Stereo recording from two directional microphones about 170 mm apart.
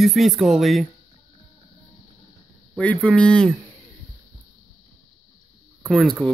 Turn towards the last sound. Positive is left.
turn(degrees=0)  # may be behind; listen again after turning